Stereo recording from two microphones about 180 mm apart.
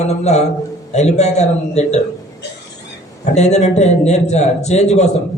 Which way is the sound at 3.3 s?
40° left (ahead or behind).